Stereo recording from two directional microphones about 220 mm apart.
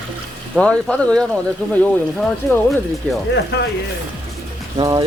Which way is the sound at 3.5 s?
50° left (ahead or behind).